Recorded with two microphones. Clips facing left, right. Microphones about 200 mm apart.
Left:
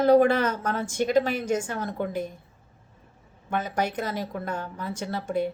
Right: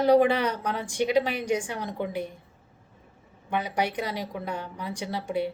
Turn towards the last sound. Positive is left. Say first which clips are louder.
# left 1 dB
turn(degrees=-15)  # may be behind; listen again after turning